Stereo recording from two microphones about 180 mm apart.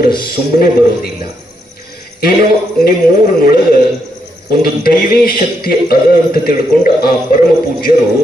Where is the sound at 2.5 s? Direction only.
55° left (ahead or behind).